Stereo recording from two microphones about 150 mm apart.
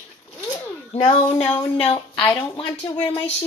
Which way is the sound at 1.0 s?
40° left (ahead or behind).